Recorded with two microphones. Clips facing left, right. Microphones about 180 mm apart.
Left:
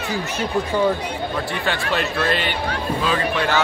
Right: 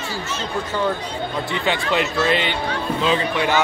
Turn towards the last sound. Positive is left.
turn(degrees=-20)  # may be behind; listen again after turning